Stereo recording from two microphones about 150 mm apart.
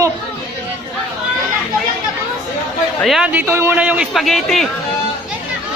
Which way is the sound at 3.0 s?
5° right (ahead or behind).